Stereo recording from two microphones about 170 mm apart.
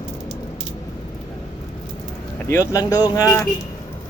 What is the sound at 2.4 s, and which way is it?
Speech, 15° left (ahead or behind).